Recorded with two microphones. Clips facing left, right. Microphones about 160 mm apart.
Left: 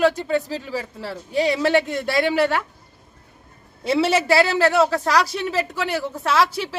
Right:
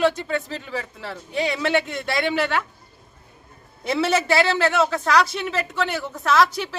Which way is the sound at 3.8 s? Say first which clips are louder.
Left 2 dB; 30° left (ahead or behind).